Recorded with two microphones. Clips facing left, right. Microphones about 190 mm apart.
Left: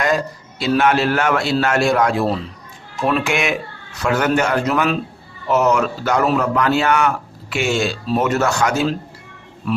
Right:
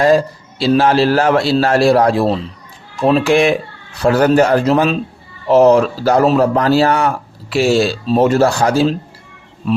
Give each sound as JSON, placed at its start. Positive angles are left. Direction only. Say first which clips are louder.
{"t": 0.0, "sound": "a man's voice", "louder": "right 7 dB", "side_deg": -30}